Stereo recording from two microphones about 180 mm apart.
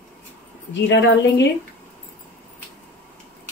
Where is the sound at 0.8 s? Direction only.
85° left.